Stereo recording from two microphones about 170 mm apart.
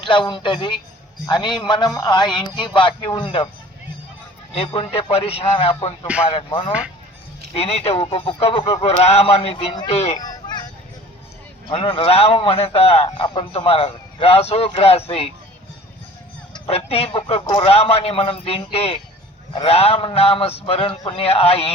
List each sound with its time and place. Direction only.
0.0 s a man's voice: 30° left (ahead or behind)
4.5 s speech: 35° left (ahead or behind)
10.2 s a sound: 25° left (ahead or behind)
11.7 s speech: 30° left (ahead or behind)
16.5 s speech: 35° left (ahead or behind)